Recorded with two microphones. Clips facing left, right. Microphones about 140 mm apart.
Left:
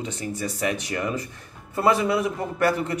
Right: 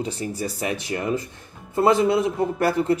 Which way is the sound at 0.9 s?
25° right (ahead or behind).